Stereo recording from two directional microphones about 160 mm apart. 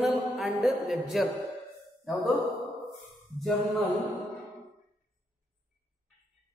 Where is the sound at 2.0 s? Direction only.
Centre (ahead or behind).